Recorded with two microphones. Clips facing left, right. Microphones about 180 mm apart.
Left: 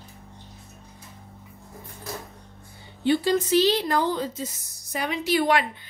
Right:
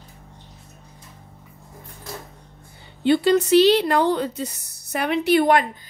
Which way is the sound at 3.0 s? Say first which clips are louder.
Right 5 dB; 65° right (ahead or behind).